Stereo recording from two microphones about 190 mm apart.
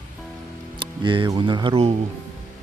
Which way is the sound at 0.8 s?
25° right (ahead or behind).